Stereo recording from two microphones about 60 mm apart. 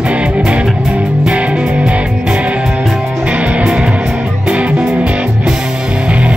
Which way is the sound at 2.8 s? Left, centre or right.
Centre.